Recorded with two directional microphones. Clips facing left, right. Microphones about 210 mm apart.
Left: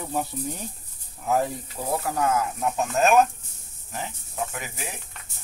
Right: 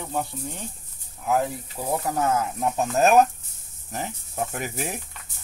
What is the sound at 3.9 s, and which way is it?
Speech, 45° right (ahead or behind).